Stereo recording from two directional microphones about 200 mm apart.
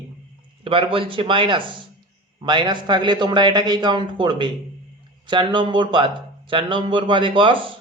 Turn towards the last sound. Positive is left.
turn(degrees=-25)  # may be behind; listen again after turning